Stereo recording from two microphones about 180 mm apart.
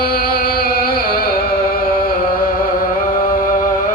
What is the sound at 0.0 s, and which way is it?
Music, 55° left (ahead or behind).